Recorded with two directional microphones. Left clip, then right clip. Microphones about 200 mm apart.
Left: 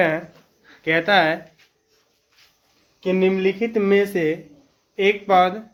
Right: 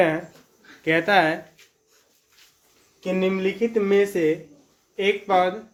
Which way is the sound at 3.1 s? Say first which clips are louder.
Left 4 dB; 50° left (ahead or behind).